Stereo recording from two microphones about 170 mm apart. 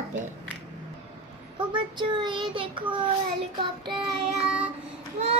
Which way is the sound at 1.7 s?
25° right (ahead or behind).